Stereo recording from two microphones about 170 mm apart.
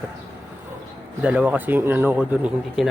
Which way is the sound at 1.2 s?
10° right (ahead or behind).